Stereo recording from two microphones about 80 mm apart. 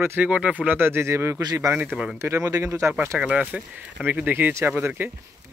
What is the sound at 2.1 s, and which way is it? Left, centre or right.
Speech, right.